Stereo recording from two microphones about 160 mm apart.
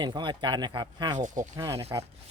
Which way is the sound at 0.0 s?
30° right (ahead or behind).